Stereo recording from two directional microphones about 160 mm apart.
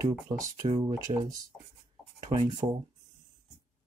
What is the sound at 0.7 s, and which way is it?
Speech, 35° right (ahead or behind).